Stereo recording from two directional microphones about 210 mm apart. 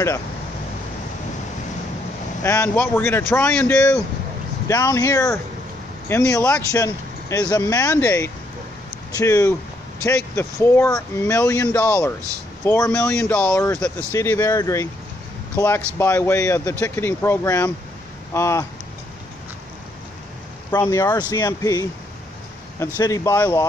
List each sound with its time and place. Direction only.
2.4 s speech: 10° left (ahead or behind)
20.9 s speech: 20° left (ahead or behind)
22.9 s speech: 15° left (ahead or behind)